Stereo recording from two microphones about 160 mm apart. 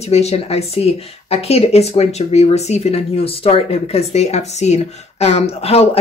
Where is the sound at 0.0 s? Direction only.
40° left (ahead or behind).